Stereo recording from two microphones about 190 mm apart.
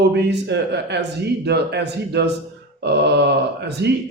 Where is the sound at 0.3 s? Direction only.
65° right (ahead or behind).